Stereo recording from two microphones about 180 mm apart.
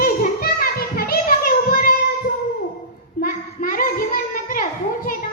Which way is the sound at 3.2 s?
50° left (ahead or behind).